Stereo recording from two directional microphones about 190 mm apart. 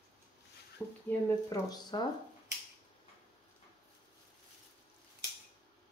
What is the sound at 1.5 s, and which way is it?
Speech, 20° left (ahead or behind).